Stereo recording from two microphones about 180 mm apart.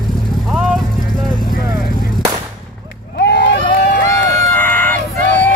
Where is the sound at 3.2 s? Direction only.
75° left (ahead or behind).